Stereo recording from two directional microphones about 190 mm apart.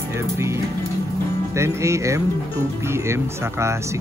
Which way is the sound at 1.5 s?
15° right (ahead or behind).